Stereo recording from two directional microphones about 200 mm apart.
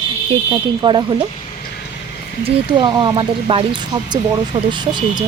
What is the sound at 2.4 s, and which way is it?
Speech, 25° right (ahead or behind).